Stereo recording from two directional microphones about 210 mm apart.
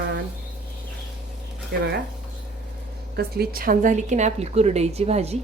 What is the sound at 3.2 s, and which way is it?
Speech, 50° right (ahead or behind).